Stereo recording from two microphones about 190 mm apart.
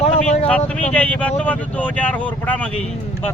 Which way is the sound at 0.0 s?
35° left (ahead or behind).